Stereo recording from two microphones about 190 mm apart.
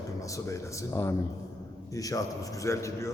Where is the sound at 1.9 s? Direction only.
20° left (ahead or behind).